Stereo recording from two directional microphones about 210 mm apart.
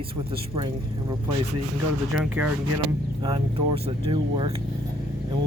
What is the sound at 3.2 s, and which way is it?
Speech, 25° right (ahead or behind).